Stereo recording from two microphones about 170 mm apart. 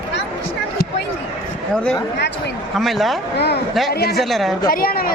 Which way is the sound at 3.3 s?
75° left (ahead or behind).